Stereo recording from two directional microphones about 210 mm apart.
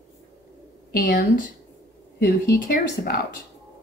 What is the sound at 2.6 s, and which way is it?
Speech, 45° left (ahead or behind).